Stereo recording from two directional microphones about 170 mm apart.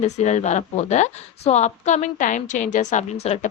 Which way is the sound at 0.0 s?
40° left (ahead or behind).